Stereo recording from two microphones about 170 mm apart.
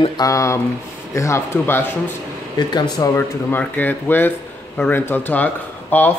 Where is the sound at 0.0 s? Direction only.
20° left (ahead or behind).